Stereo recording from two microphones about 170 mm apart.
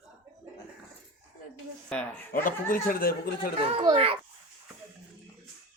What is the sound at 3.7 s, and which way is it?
Speech, 35° right (ahead or behind).